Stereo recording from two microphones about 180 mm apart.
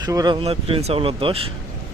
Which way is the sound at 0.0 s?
20° right (ahead or behind).